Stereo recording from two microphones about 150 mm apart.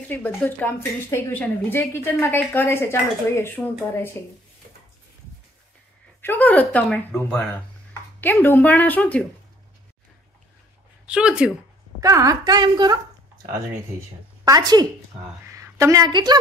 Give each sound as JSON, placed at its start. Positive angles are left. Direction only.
{"t": 0.1, "sound": "speech", "side_deg": 10}
{"t": 6.2, "sound": "speech", "side_deg": 10}
{"t": 11.1, "sound": "speech", "side_deg": -5}
{"t": 12.0, "sound": "a woman's voice", "side_deg": -20}
{"t": 14.4, "sound": "a woman's voice", "side_deg": -25}
{"t": 15.4, "sound": "a sound", "side_deg": -20}